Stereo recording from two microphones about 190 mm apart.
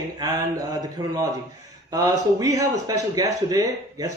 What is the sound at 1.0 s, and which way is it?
A man's voice, 20° right (ahead or behind).